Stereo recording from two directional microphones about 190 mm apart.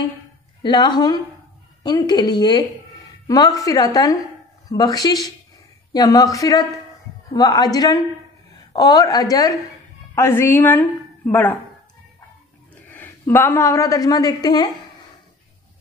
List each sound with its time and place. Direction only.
0.6 s a woman's voice: 25° left (ahead or behind)
12.9 s a woman's voice: 10° left (ahead or behind)